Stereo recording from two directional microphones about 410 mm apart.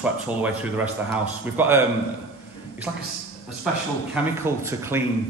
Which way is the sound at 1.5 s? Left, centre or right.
Centre.